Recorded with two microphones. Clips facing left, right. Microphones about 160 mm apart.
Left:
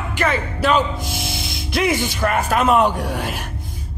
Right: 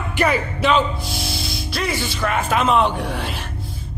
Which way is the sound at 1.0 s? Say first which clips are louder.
Even; 20° left (ahead or behind).